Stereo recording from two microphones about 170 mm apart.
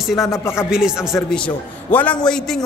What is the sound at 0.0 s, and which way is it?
Speech, centre (ahead or behind).